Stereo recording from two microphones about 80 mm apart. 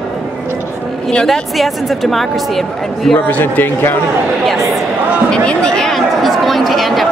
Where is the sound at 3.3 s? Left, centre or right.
Left.